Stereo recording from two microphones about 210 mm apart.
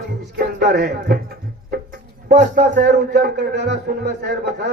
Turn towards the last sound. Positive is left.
turn(degrees=-50)  # may be behind; listen again after turning